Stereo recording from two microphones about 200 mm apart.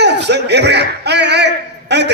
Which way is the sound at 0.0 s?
55° right (ahead or behind).